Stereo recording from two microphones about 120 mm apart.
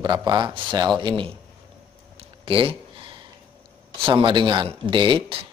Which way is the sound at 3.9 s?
45° right (ahead or behind).